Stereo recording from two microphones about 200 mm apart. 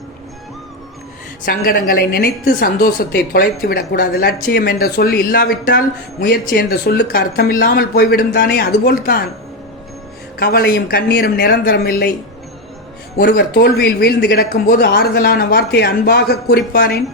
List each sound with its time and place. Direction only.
1.5 s a woman's voice: 50° left (ahead or behind)
10.4 s a woman's voice: 50° left (ahead or behind)
13.1 s a woman's voice: 50° left (ahead or behind)